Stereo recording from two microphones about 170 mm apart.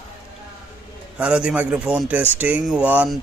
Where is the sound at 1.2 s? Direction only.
5° right (ahead or behind).